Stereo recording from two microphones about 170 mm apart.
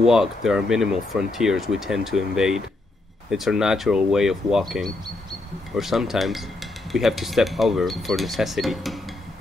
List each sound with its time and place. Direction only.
0.0 s speech: 5° right (ahead or behind)